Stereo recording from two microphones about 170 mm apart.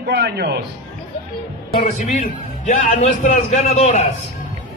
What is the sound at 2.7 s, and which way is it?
A man's voice, 45° left (ahead or behind).